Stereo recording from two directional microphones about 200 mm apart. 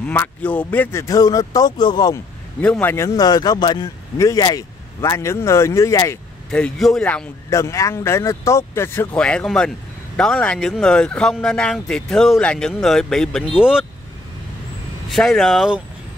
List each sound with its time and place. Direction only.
0.0 s a man's voice: 10° left (ahead or behind)
6.5 s a man's voice: 5° left (ahead or behind)
15.0 s speech: centre (ahead or behind)